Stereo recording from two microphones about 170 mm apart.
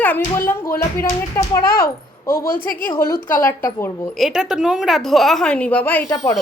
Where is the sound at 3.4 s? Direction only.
15° left (ahead or behind).